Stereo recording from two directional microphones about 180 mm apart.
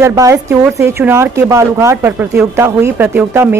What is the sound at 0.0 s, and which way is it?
A woman's voice, 20° right (ahead or behind).